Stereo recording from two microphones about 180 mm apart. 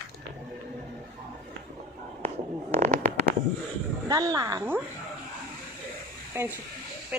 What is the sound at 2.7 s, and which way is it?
Fireworks, 40° right (ahead or behind).